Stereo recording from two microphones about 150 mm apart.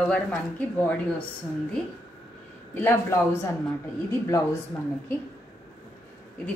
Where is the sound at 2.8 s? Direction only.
15° left (ahead or behind).